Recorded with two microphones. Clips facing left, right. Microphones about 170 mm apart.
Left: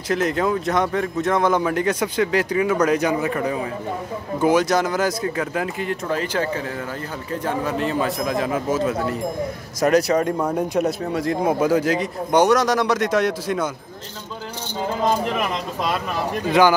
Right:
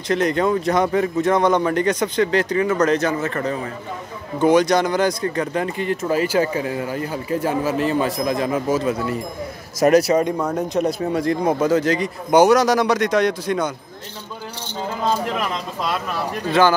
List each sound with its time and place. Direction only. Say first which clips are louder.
0.1 s a man's voice: right 2 dB; 5° left (ahead or behind)
6.0 s a man's voice: right 5 dB; 10° right (ahead or behind)
10.3 s a man's voice: even; 10° left (ahead or behind)
16.4 s speech: even; 15° left (ahead or behind)